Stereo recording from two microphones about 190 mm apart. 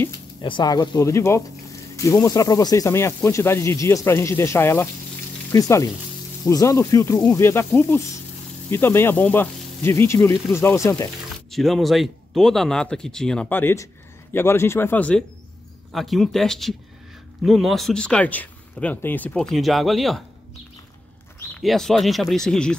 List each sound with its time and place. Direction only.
0.4 s speech: 25° left (ahead or behind)
11.5 s speech: centre (ahead or behind)
21.5 s speech: centre (ahead or behind)